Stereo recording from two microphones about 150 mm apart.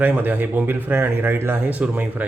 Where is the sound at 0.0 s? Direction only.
10° right (ahead or behind).